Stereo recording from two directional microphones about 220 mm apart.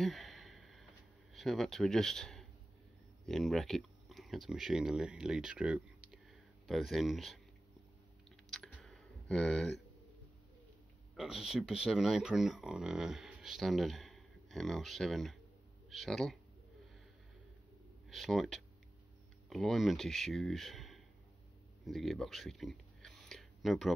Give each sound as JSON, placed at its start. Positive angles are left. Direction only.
{"t": 0.0, "sound": "a sound", "side_deg": 0}
{"t": 1.3, "sound": "speech", "side_deg": 0}
{"t": 8.5, "sound": "typing", "side_deg": 0}
{"t": 11.1, "sound": "speech", "side_deg": 0}
{"t": 18.1, "sound": "speech", "side_deg": 0}
{"t": 21.8, "sound": "a sound", "side_deg": 0}